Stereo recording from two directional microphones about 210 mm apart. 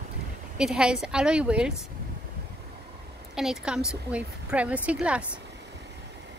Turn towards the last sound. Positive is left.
turn(degrees=-5)  # may be behind; listen again after turning